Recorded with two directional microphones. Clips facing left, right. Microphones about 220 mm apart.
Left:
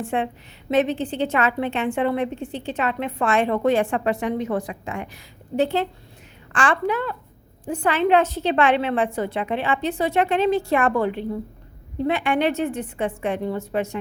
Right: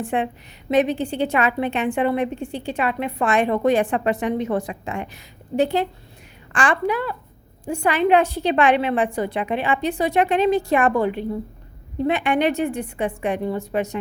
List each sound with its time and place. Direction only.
0.0 s a woman's voice: 15° right (ahead or behind)
5.5 s a woman's voice: 15° right (ahead or behind)